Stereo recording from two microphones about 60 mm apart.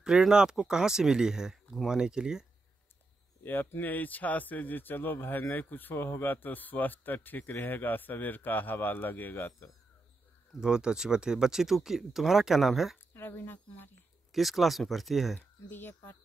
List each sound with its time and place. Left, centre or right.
0.0 s speech: centre
3.4 s speech: left
10.5 s speech: centre
13.1 s speech: left
14.3 s speech: centre
15.3 s speech: left